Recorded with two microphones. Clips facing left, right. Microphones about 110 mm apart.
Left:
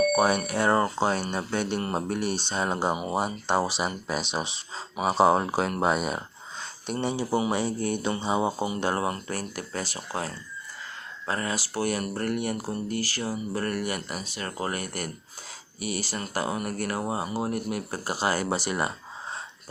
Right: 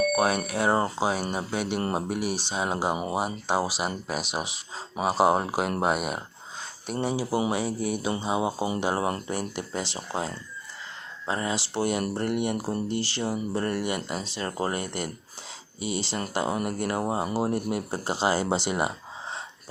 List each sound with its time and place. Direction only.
0.1 s speech: centre (ahead or behind)
0.7 s speech: 25° right (ahead or behind)
0.9 s speech: 5° right (ahead or behind); by 10.0 s 20° right (ahead or behind)
11.3 s speech: 20° right (ahead or behind)